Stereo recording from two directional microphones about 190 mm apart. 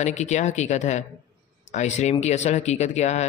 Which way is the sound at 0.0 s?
40° left (ahead or behind).